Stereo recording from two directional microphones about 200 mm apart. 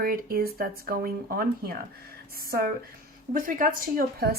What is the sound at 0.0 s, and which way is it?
A woman's voice, 50° right (ahead or behind).